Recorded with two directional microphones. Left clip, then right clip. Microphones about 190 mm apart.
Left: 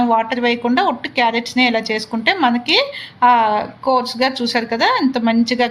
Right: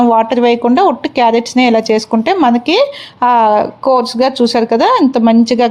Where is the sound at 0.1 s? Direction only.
40° right (ahead or behind).